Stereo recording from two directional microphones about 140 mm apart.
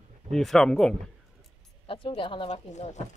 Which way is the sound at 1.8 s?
40° left (ahead or behind).